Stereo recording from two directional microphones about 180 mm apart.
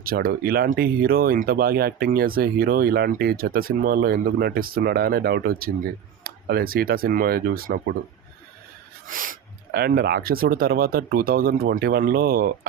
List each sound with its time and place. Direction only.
0.0 s speech: 55° right (ahead or behind)
9.0 s speech: 50° right (ahead or behind)